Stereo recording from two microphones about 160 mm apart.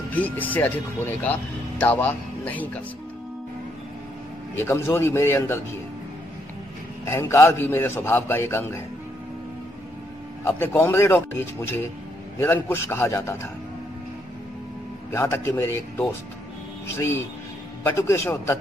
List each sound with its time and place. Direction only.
0.1 s a man's voice: 10° left (ahead or behind)
4.6 s a man's voice: 15° left (ahead or behind)
7.1 s a man's voice: 15° left (ahead or behind)
10.4 s a man's voice: 15° left (ahead or behind)
12.4 s a man's voice: 15° left (ahead or behind)
15.1 s a man's voice: 15° left (ahead or behind)